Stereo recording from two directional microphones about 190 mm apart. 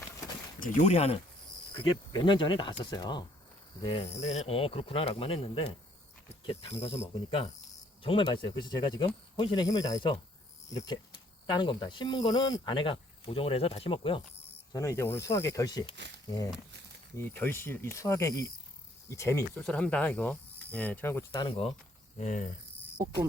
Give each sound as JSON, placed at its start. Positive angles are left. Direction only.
{"t": 0.6, "sound": "speech", "side_deg": 35}
{"t": 1.7, "sound": "speech", "side_deg": 25}
{"t": 4.1, "sound": "speech", "side_deg": 35}
{"t": 11.4, "sound": "speech", "side_deg": 25}
{"t": 14.7, "sound": "speech", "side_deg": 15}
{"t": 17.2, "sound": "speech", "side_deg": 10}
{"t": 21.3, "sound": "speech", "side_deg": 25}
{"t": 22.2, "sound": "speech", "side_deg": 40}